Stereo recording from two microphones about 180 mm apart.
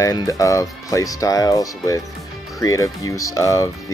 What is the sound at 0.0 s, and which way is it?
Speech, 20° left (ahead or behind).